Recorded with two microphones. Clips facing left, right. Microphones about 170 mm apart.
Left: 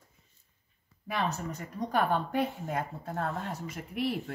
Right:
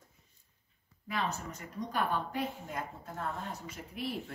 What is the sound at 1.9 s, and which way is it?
A woman's voice, 65° left (ahead or behind).